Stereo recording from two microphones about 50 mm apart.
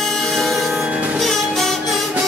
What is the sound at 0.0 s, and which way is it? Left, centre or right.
Music, centre.